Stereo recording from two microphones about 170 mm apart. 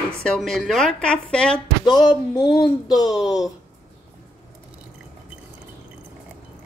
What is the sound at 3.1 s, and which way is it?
Speech, centre (ahead or behind).